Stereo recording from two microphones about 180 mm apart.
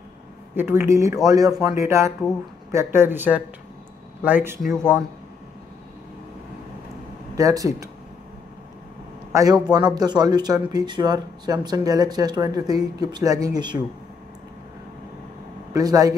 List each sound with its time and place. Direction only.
0.6 s speech: 15° right (ahead or behind)
7.3 s speech: 20° right (ahead or behind)
9.3 s speech: 20° right (ahead or behind)
15.7 s speech: 20° right (ahead or behind)